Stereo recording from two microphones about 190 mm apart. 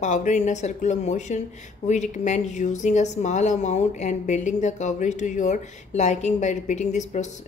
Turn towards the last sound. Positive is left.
turn(degrees=40)  # may be behind; listen again after turning